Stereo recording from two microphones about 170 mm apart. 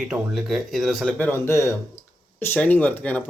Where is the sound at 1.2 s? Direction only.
15° left (ahead or behind).